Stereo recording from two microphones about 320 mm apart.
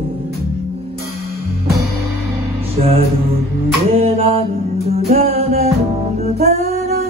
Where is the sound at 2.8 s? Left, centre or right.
Right.